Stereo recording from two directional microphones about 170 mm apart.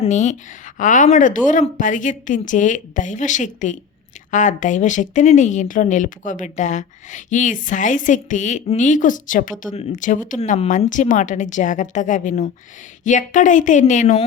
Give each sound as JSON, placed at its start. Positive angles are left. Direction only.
{"t": 0.0, "sound": "a woman's voice", "side_deg": 45}